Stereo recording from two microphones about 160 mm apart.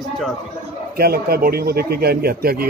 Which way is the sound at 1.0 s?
70° right (ahead or behind).